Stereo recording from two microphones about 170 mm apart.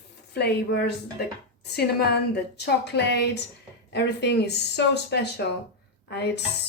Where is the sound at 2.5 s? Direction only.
75° left (ahead or behind).